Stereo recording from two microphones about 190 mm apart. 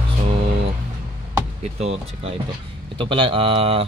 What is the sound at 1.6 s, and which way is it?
Speech, 35° right (ahead or behind).